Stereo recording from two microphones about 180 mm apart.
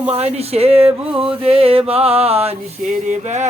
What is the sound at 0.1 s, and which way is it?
Music, 35° right (ahead or behind).